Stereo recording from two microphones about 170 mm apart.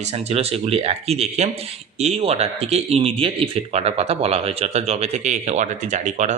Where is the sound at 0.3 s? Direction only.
35° right (ahead or behind).